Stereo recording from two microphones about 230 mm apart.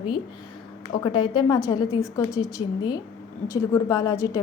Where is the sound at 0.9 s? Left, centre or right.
Centre.